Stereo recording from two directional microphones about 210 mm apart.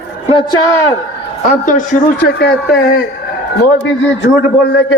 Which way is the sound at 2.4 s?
55° left (ahead or behind).